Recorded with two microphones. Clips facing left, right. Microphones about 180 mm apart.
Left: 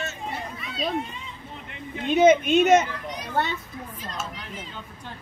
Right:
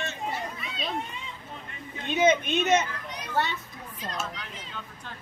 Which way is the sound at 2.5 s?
50° left (ahead or behind).